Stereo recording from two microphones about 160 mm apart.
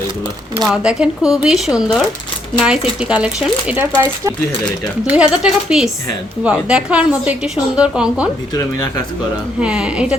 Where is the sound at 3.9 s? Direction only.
20° right (ahead or behind).